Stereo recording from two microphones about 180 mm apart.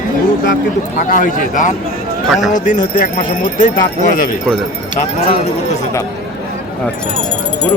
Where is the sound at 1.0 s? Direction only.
50° left (ahead or behind).